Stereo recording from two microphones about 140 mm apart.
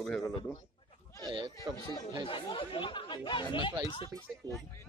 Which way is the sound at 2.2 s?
40° left (ahead or behind).